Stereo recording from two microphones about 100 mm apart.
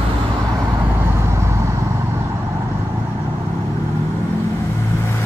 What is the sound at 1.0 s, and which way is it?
Vehicle, 25° right (ahead or behind).